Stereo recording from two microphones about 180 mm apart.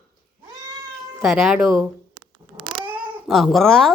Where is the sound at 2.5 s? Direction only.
25° right (ahead or behind).